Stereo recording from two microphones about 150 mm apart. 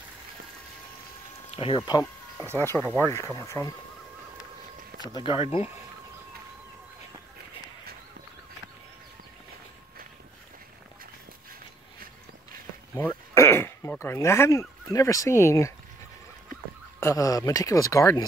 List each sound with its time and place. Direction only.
1.5 s speech: 35° left (ahead or behind)
2.5 s speech: 15° left (ahead or behind)
5.1 s speech: 35° left (ahead or behind)
13.3 s speech: 20° left (ahead or behind)
17.0 s speech: 20° left (ahead or behind)